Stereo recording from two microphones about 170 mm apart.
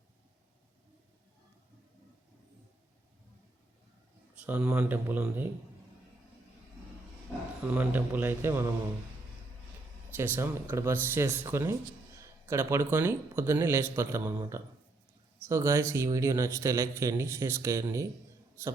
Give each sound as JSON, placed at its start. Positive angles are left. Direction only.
{"t": 4.4, "sound": "a man's voice", "side_deg": -10}
{"t": 7.7, "sound": "a man's voice", "side_deg": -10}
{"t": 10.1, "sound": "a man's voice", "side_deg": -10}